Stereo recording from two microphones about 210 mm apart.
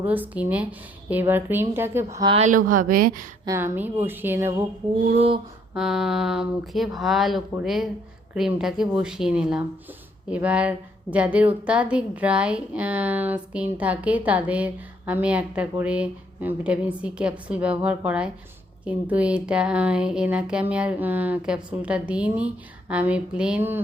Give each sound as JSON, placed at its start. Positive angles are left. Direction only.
{"t": 0.0, "sound": "a woman's voice", "side_deg": -10}
{"t": 2.3, "sound": "speech", "side_deg": -35}
{"t": 3.4, "sound": "a woman's voice", "side_deg": -10}
{"t": 5.1, "sound": "a sound", "side_deg": -30}
{"t": 5.7, "sound": "a woman's voice", "side_deg": -5}